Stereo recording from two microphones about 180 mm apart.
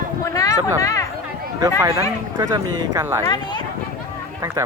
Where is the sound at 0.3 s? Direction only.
20° left (ahead or behind).